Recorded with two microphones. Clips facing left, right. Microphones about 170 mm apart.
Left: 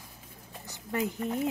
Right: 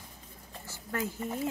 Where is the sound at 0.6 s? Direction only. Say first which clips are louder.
Left 3 dB; 20° left (ahead or behind).